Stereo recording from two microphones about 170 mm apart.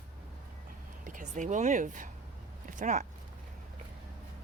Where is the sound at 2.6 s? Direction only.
50° right (ahead or behind).